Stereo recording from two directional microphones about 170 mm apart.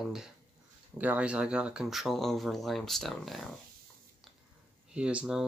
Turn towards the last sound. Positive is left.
turn(degrees=-5)  # may be behind; listen again after turning